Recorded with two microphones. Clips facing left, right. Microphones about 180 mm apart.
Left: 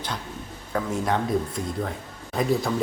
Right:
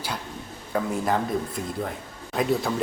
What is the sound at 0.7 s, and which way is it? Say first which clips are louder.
Speech: right 1 dB; 5° right (ahead or behind).